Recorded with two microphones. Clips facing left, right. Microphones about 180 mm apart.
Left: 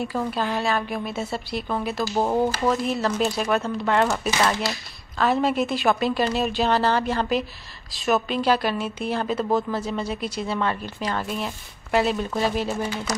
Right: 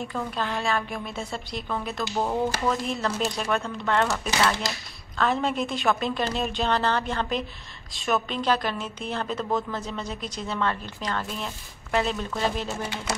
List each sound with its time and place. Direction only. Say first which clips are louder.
0.0 s a woman's voice: left 4 dB; 10° left (ahead or behind)
2.1 s speech: left 4 dB; 25° left (ahead or behind)
2.9 s speech: left 4 dB; 5° left (ahead or behind)
5.1 s a woman's voice: left 4 dB; 5° left (ahead or behind)